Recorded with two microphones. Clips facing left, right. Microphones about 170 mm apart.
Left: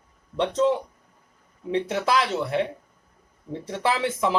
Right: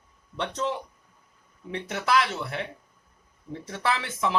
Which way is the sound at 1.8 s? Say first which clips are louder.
Right 1 dB; 30° left (ahead or behind).